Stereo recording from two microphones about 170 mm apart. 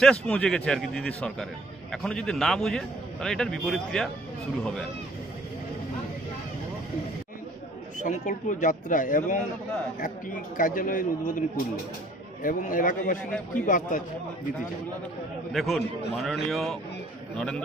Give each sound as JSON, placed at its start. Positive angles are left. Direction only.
{"t": 0.0, "sound": "a man's voice", "side_deg": 5}
{"t": 8.0, "sound": "speech", "side_deg": 50}
{"t": 10.6, "sound": "speech", "side_deg": 55}
{"t": 15.5, "sound": "a man's voice", "side_deg": 0}